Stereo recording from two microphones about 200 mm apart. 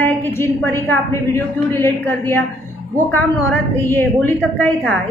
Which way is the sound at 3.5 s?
10° left (ahead or behind).